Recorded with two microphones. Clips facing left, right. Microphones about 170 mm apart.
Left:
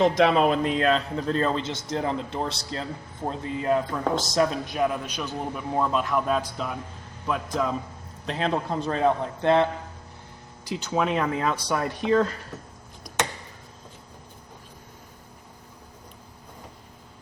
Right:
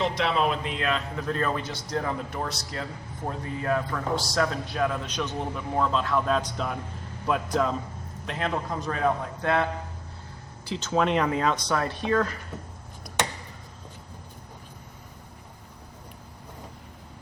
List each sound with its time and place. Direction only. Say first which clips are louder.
0.0 s a man's voice: left 6 dB; 45° left (ahead or behind); by 7.8 s centre (ahead or behind)
8.3 s speech: left 3 dB; 30° left (ahead or behind)
10.7 s a man's voice: right 1 dB; 10° left (ahead or behind)